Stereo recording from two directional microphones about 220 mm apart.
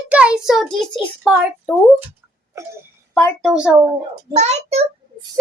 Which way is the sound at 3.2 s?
Centre (ahead or behind).